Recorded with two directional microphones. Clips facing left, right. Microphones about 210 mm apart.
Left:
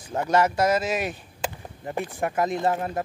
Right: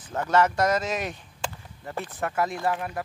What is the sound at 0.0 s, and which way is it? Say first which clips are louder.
Speech: left 1 dB; 15° left (ahead or behind).